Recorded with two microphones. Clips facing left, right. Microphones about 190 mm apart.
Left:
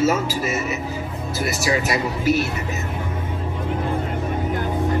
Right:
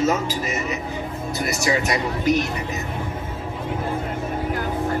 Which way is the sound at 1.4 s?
5° left (ahead or behind).